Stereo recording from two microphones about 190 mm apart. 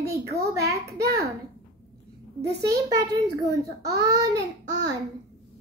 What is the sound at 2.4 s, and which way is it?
Speech, 60° right (ahead or behind).